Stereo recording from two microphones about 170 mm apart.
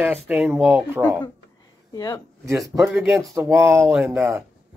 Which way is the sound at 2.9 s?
Centre (ahead or behind).